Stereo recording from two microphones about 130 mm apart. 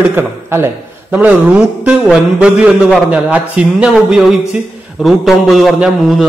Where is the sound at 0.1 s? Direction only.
20° right (ahead or behind).